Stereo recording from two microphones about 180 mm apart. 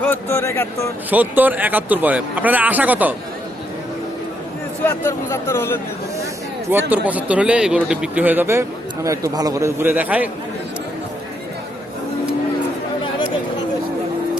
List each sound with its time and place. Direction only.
0.0 s speech: 10° left (ahead or behind)
1.1 s speech: 10° right (ahead or behind)
4.8 s speech: 15° left (ahead or behind)
6.7 s speech: 10° right (ahead or behind)